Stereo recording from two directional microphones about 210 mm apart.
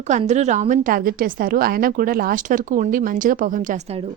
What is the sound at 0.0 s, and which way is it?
A woman's voice, 35° right (ahead or behind).